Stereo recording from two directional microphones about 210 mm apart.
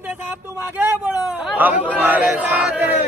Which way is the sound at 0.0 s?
5° right (ahead or behind).